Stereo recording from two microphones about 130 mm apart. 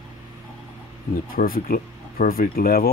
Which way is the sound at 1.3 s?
90° left.